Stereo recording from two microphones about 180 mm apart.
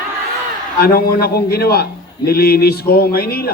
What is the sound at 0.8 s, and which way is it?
A man's voice, 55° left (ahead or behind).